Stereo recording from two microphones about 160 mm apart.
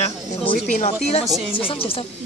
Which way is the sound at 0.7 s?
45° left (ahead or behind).